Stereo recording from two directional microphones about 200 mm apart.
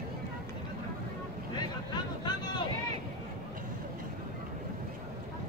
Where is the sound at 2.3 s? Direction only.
20° left (ahead or behind).